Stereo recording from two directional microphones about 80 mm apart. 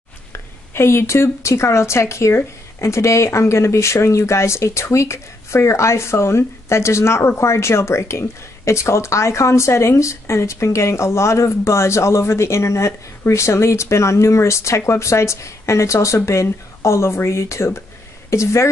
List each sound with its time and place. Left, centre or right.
0.3 s speech: left